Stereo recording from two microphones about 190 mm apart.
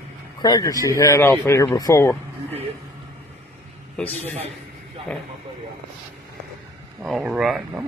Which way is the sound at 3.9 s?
10° left (ahead or behind).